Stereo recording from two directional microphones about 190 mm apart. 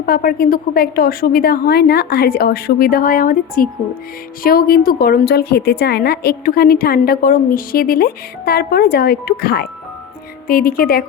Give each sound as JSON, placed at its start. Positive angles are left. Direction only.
{"t": 0.0, "sound": "a woman's voice", "side_deg": 50}